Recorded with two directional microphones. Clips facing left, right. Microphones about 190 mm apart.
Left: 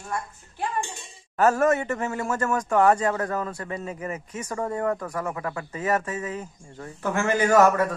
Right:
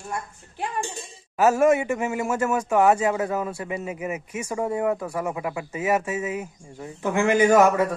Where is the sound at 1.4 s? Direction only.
10° right (ahead or behind).